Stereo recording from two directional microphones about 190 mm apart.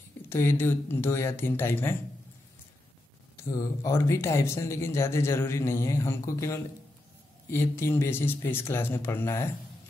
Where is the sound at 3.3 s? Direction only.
15° left (ahead or behind).